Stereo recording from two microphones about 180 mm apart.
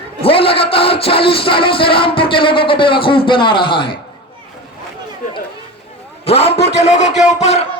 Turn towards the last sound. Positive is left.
turn(degrees=40)  # may be behind; listen again after turning